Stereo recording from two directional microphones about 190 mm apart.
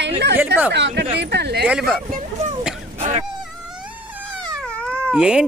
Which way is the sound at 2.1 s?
40° right (ahead or behind).